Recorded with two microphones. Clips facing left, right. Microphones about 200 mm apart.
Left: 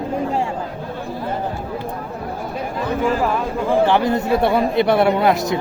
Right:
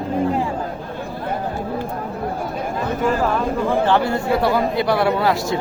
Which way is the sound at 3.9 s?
15° left (ahead or behind).